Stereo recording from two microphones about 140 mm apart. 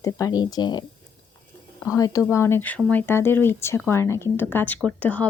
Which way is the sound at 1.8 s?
25° left (ahead or behind).